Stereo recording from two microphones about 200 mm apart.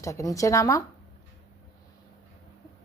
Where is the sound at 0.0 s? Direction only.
15° left (ahead or behind).